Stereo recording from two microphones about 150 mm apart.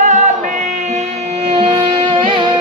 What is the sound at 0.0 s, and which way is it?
Music, 55° right (ahead or behind).